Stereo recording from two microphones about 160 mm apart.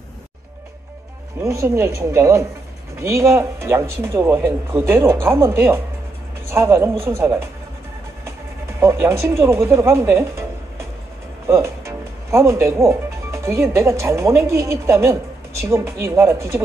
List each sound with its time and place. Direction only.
1.4 s speech: 20° right (ahead or behind)
8.7 s speech: 15° right (ahead or behind)